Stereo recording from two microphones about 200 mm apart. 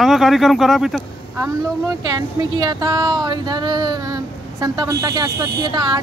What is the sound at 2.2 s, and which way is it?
Speech, 20° right (ahead or behind).